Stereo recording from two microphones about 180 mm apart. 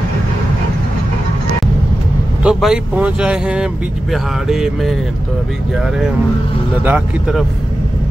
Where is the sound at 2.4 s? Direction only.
5° right (ahead or behind).